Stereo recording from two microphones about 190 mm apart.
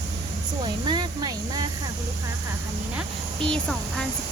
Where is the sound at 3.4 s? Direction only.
5° left (ahead or behind).